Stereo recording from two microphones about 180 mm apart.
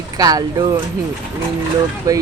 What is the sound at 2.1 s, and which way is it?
Speech, 20° right (ahead or behind).